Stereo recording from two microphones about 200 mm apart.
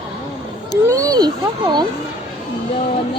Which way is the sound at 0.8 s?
15° right (ahead or behind).